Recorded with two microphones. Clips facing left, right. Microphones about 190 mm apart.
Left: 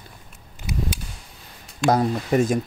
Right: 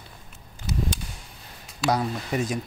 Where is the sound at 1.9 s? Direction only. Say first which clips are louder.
Left 6 dB; 50° left (ahead or behind).